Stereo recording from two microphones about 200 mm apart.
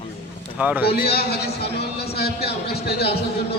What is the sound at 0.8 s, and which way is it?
A man's voice, 50° left (ahead or behind).